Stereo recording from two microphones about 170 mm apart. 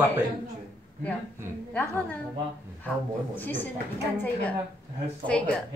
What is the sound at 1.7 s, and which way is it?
Speech, 10° left (ahead or behind).